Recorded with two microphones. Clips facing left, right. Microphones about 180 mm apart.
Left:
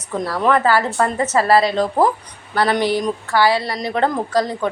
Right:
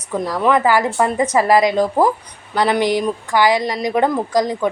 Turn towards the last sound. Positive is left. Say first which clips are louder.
# right 2 dB
turn(degrees=-15)  # may be behind; listen again after turning